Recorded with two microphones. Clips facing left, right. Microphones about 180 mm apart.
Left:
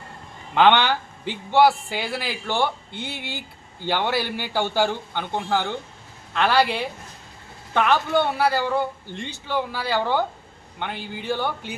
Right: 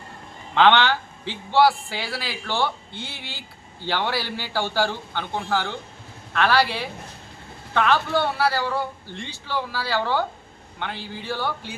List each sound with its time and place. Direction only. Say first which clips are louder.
0.5 s a man's voice: even; 10° left (ahead or behind)
3.8 s a man's voice: left 2 dB; 15° left (ahead or behind)